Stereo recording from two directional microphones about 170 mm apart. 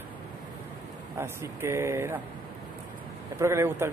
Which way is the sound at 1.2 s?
15° right (ahead or behind).